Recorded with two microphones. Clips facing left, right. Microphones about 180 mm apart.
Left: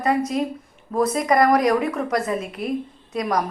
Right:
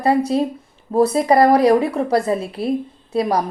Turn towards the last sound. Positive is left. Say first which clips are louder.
# right 4 dB
turn(degrees=-30)  # may be behind; listen again after turning